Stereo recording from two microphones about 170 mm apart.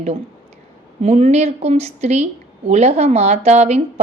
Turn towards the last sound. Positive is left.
turn(degrees=-40)  # may be behind; listen again after turning